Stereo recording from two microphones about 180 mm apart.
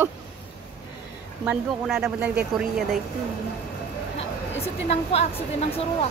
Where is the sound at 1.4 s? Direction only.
5° right (ahead or behind).